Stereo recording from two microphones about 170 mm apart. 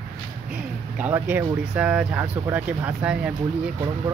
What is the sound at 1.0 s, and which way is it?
Speech, 10° right (ahead or behind).